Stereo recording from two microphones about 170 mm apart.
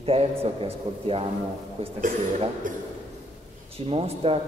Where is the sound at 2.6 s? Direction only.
50° right (ahead or behind).